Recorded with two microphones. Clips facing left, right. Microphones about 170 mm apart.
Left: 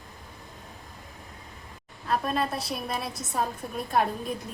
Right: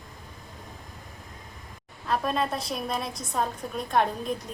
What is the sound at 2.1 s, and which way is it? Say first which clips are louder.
A woman's voice: right 1 dB; centre (ahead or behind).